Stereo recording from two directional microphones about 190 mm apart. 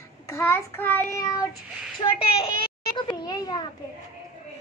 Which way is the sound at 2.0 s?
30° left (ahead or behind).